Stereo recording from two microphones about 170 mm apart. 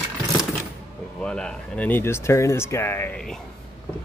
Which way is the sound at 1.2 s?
5° left (ahead or behind).